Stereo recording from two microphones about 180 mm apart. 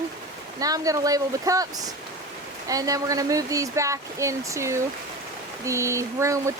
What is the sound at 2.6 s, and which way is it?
Speech, 20° right (ahead or behind).